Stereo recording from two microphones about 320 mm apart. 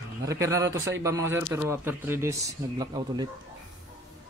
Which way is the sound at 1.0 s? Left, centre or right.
Centre.